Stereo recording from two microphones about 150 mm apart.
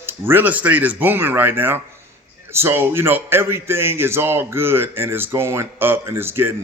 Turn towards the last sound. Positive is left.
turn(degrees=-15)  # may be behind; listen again after turning